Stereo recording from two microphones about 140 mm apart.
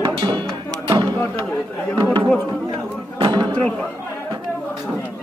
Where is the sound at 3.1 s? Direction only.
35° right (ahead or behind).